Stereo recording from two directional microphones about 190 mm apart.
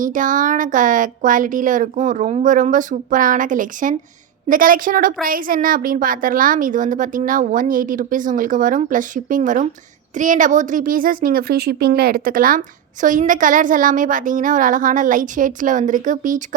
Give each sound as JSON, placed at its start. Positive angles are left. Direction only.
{"t": 0.0, "sound": "a woman's voice", "side_deg": -45}